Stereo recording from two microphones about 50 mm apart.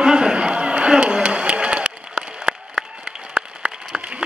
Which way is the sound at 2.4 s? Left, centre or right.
Centre.